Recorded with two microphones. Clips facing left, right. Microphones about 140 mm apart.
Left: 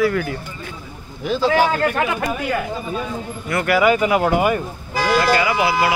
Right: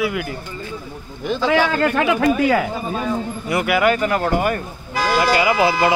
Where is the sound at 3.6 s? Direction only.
Centre (ahead or behind).